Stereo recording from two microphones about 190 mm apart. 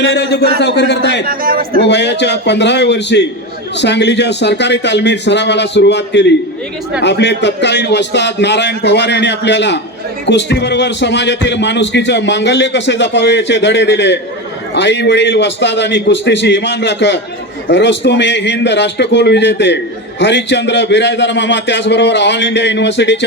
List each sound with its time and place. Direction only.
0.0 s a man's voice: 65° left (ahead or behind)
1.2 s speech: 50° right (ahead or behind)
1.9 s a man's voice: 65° left (ahead or behind)